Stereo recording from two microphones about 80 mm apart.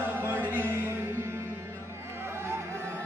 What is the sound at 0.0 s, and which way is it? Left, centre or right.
Music, right.